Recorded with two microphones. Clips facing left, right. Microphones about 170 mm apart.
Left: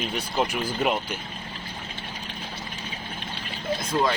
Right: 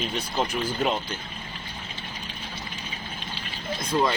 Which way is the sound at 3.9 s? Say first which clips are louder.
Right 1 dB; 5° right (ahead or behind).